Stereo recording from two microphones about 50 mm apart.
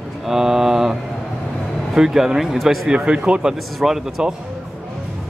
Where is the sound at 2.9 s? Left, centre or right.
Centre.